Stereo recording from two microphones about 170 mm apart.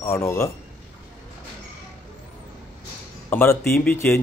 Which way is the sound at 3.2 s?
15° left (ahead or behind).